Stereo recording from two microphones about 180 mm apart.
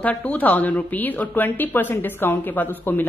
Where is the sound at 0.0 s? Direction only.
10° left (ahead or behind).